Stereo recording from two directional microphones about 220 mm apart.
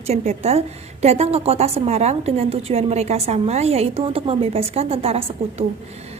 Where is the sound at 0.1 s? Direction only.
30° right (ahead or behind).